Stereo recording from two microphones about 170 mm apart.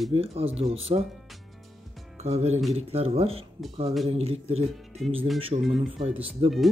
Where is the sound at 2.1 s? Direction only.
40° right (ahead or behind).